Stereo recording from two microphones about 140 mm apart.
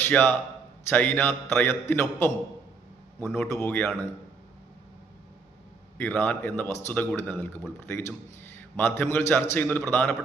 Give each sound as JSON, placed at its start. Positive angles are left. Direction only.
{"t": 0.0, "sound": "a man's voice", "side_deg": 15}
{"t": 6.0, "sound": "a man's voice", "side_deg": 15}